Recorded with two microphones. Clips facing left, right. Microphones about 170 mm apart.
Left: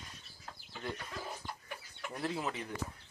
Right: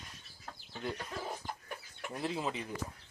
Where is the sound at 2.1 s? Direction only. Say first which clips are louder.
Right 1 dB; 20° right (ahead or behind).